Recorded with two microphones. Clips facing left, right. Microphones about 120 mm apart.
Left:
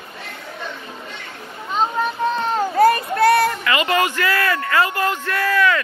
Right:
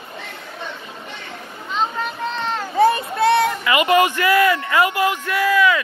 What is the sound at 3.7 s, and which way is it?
Speech, 15° right (ahead or behind).